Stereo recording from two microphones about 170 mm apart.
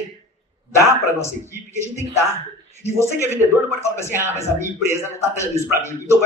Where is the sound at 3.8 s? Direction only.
15° left (ahead or behind).